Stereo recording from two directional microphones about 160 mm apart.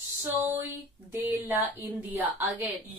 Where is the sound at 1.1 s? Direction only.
15° right (ahead or behind).